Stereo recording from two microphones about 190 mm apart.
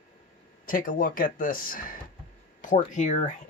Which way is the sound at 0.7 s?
45° left (ahead or behind).